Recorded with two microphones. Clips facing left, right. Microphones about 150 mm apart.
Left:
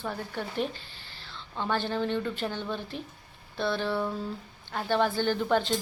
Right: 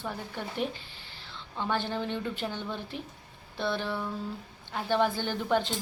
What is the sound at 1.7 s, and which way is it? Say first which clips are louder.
A woman's voice: left 3 dB; 15° right (ahead or behind).